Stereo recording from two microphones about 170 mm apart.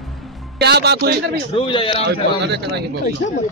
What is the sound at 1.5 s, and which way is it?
Speech, 30° left (ahead or behind).